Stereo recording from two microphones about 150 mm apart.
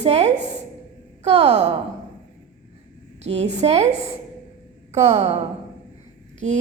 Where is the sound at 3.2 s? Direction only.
50° right (ahead or behind).